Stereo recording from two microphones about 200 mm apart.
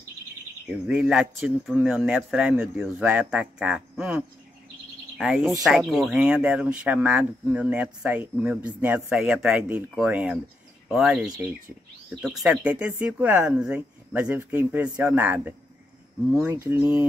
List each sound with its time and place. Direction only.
0.7 s speech: 5° right (ahead or behind)